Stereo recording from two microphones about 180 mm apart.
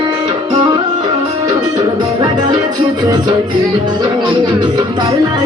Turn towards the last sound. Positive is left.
turn(degrees=-25)  # may be behind; listen again after turning